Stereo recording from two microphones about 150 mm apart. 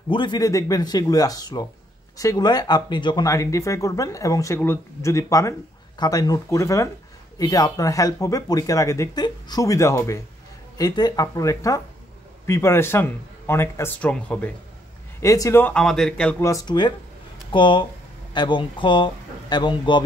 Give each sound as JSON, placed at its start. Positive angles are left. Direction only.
{"t": 0.1, "sound": "speech", "side_deg": 30}
{"t": 15.1, "sound": "speech", "side_deg": 20}
{"t": 16.4, "sound": "speech", "side_deg": 25}